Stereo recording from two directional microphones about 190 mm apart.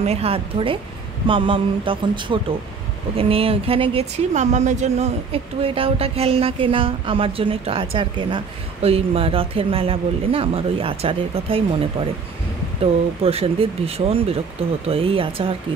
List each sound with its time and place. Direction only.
0.0 s speech: 30° right (ahead or behind)
13.2 s speech: 30° right (ahead or behind)